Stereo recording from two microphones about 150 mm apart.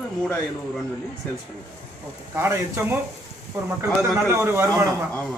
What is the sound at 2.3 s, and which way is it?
Speech, 15° right (ahead or behind).